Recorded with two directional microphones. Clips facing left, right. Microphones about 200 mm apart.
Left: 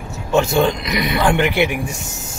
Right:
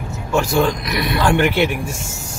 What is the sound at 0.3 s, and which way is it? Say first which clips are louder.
Speech: left 2 dB; 20° left (ahead or behind).